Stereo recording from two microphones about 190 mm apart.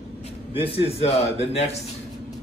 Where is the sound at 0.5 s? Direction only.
30° left (ahead or behind).